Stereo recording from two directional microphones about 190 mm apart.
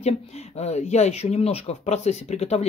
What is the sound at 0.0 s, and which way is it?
Speech, 35° left (ahead or behind).